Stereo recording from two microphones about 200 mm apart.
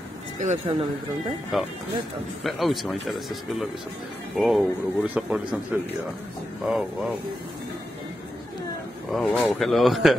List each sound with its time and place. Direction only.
0.4 s speech: 35° right (ahead or behind)
1.5 s speech: centre (ahead or behind)
6.6 s speech: centre (ahead or behind)
9.1 s speech: 5° left (ahead or behind)